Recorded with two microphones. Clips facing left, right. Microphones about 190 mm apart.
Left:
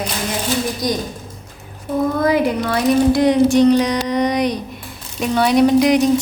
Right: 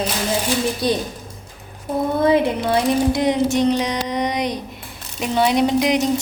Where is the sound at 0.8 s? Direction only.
30° right (ahead or behind).